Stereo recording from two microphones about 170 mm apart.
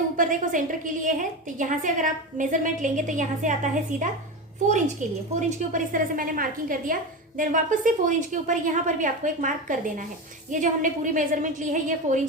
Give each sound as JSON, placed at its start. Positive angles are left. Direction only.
{"t": 0.2, "sound": "a woman's voice", "side_deg": -50}
{"t": 5.4, "sound": "a woman's voice", "side_deg": -45}